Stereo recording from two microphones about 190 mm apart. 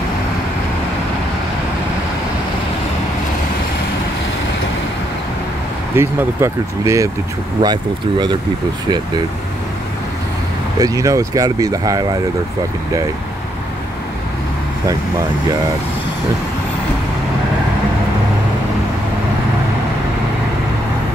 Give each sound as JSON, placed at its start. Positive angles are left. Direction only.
{"t": 5.9, "sound": "speech", "side_deg": -15}
{"t": 10.8, "sound": "speech", "side_deg": -20}